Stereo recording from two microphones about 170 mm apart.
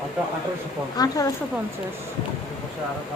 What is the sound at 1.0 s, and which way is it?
Speech, 20° left (ahead or behind).